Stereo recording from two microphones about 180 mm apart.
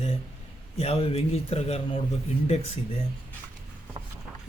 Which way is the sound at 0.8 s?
35° left (ahead or behind).